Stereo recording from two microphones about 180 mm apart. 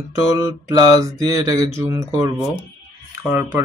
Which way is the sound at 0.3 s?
15° right (ahead or behind).